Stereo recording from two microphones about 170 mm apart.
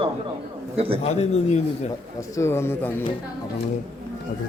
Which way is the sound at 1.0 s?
40° left (ahead or behind).